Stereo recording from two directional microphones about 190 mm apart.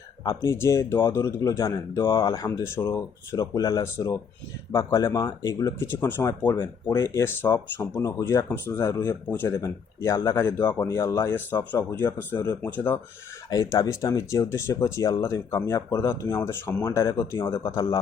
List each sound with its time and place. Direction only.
0.3 s speech: 15° left (ahead or behind)